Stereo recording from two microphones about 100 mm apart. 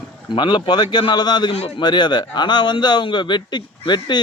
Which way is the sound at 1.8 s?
50° left (ahead or behind).